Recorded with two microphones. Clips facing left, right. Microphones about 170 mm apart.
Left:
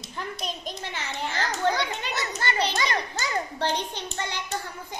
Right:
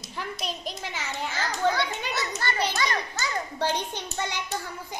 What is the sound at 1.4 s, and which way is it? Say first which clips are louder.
Children playing: even; 15° left (ahead or behind).